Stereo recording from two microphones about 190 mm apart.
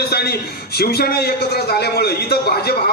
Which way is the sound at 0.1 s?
55° left (ahead or behind).